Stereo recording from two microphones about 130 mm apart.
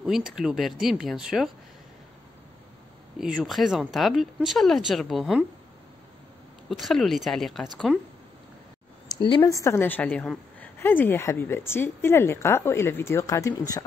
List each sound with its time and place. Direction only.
0.0 s speech: 5° right (ahead or behind)
3.2 s speech: 5° right (ahead or behind)
6.7 s speech: centre (ahead or behind)
9.2 s speech: 40° left (ahead or behind)
9.5 s a woman's voice: 25° left (ahead or behind)